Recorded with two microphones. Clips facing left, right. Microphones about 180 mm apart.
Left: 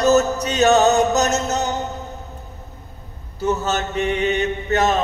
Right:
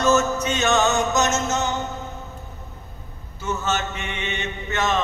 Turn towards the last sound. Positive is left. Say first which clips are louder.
# left 5 dB
turn(degrees=40)  # may be behind; listen again after turning